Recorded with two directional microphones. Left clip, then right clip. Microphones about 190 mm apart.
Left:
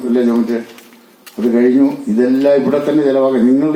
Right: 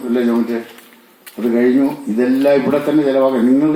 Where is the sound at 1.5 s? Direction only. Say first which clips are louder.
Left 2 dB; 40° right (ahead or behind).